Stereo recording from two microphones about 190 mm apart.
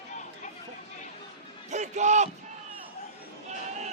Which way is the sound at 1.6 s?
40° right (ahead or behind).